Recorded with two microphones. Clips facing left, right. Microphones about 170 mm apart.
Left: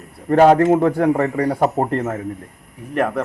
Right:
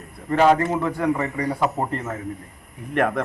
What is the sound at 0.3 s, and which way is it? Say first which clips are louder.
A man's voice: left 6 dB; 50° left (ahead or behind).